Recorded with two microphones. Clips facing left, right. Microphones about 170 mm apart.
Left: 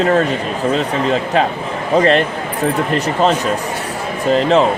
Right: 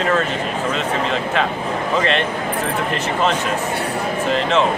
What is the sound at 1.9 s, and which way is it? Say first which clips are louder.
Speech: left 8 dB; 40° left (ahead or behind).